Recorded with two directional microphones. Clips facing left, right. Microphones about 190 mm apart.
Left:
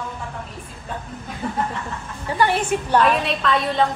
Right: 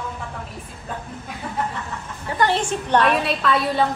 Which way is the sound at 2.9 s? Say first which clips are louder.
Even; centre (ahead or behind).